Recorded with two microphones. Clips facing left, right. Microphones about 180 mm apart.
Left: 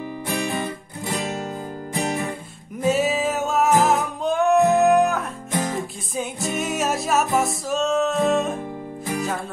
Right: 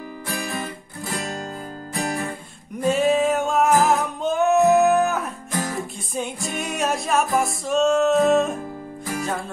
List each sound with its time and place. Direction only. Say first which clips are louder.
0.3 s music: left 3 dB; 20° left (ahead or behind)
2.0 s guitar: left 1 dB; 20° left (ahead or behind)
2.8 s music: right 2 dB; 5° left (ahead or behind)
5.5 s music: left 3 dB; 20° left (ahead or behind)
6.1 s music: left 2 dB; centre (ahead or behind)